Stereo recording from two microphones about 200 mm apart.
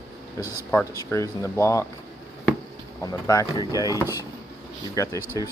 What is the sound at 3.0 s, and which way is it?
Speech, 15° left (ahead or behind).